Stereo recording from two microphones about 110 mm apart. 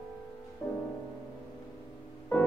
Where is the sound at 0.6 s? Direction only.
30° left (ahead or behind).